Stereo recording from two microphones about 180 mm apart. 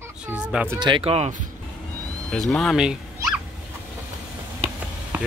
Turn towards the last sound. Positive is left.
turn(degrees=-10)  # may be behind; listen again after turning